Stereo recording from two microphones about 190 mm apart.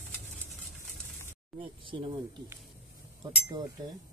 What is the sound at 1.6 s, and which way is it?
Speech, 25° right (ahead or behind).